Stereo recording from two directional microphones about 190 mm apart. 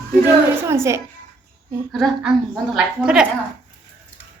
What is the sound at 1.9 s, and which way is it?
A woman's voice, centre (ahead or behind).